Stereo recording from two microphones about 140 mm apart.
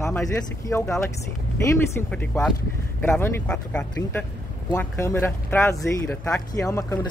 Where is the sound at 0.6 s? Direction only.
20° left (ahead or behind).